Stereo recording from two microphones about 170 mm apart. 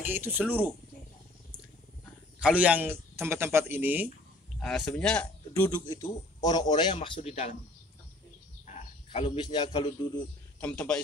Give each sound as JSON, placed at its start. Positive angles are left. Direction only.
{"t": 0.0, "sound": "speech", "side_deg": -10}
{"t": 2.4, "sound": "speech", "side_deg": -10}
{"t": 4.6, "sound": "speech", "side_deg": 5}
{"t": 5.5, "sound": "speech", "side_deg": 15}
{"t": 8.6, "sound": "speech", "side_deg": 40}
{"t": 10.6, "sound": "a man's voice", "side_deg": 10}